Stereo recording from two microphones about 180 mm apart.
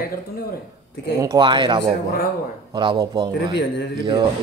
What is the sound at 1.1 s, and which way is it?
A man's voice, 20° right (ahead or behind).